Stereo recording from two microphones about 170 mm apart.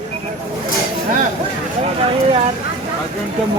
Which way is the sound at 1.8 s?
35° right (ahead or behind).